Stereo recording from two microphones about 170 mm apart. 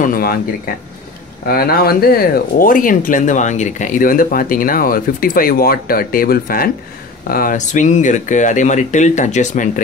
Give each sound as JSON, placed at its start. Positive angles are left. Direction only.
{"t": 0.0, "sound": "speech", "side_deg": 60}
{"t": 1.5, "sound": "speech", "side_deg": 60}